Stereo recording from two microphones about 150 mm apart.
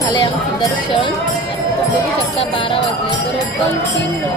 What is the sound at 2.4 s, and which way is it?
Speech, 35° left (ahead or behind).